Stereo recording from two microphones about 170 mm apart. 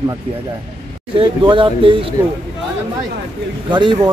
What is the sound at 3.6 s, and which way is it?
Speech, 25° right (ahead or behind).